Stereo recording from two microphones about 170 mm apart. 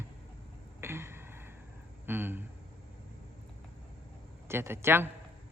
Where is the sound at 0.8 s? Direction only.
15° right (ahead or behind).